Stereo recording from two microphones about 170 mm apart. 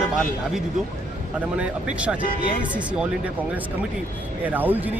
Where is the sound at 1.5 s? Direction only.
5° right (ahead or behind).